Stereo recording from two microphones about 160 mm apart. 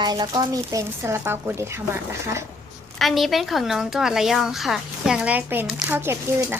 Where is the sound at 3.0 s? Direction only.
Centre (ahead or behind).